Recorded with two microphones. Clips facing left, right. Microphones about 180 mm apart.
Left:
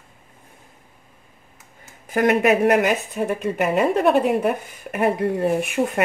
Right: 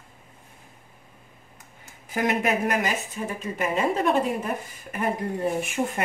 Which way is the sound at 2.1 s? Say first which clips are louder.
Left 7 dB; 60° left (ahead or behind).